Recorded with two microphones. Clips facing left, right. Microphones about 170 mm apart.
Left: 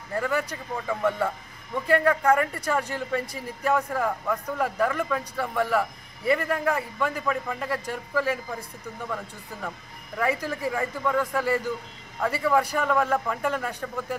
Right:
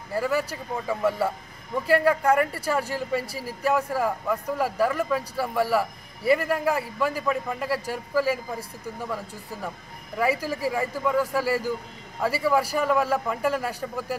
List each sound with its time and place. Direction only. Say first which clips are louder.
0.1 s a man's voice: right 2 dB; 5° right (ahead or behind)
3.3 s speech: right 2 dB; 30° right (ahead or behind)
3.6 s a man's voice: right 1 dB; 5° right (ahead or behind)